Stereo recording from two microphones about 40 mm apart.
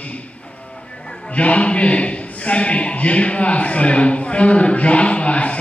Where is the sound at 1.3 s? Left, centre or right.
Left.